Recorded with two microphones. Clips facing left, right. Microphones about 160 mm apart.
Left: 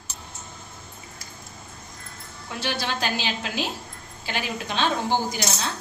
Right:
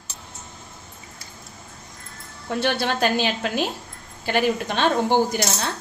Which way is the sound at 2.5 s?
55° right (ahead or behind).